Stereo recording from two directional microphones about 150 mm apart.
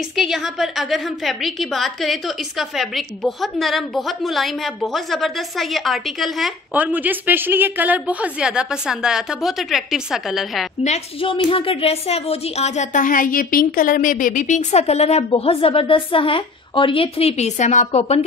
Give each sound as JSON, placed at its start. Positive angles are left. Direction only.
{"t": 0.1, "sound": "a woman's voice", "side_deg": 0}
{"t": 6.7, "sound": "a woman's voice", "side_deg": -10}
{"t": 10.8, "sound": "a woman's voice", "side_deg": 45}